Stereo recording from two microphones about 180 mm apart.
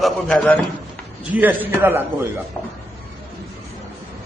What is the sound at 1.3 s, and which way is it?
Speech, 10° right (ahead or behind).